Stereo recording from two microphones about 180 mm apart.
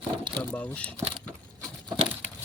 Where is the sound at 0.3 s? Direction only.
5° left (ahead or behind).